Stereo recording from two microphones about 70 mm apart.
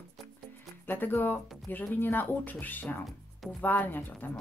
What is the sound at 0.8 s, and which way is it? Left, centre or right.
Speech, left.